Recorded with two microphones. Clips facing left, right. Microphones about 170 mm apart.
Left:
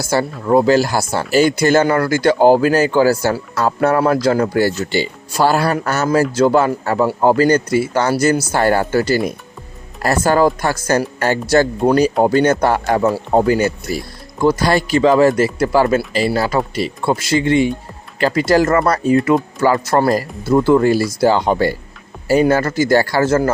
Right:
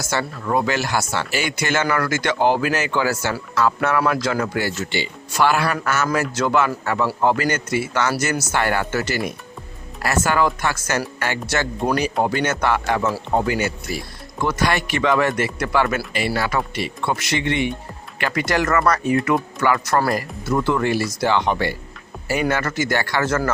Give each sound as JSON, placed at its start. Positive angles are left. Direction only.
{"t": 0.0, "sound": "speech", "side_deg": 30}